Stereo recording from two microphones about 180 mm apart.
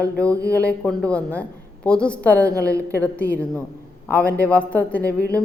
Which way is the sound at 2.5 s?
15° right (ahead or behind).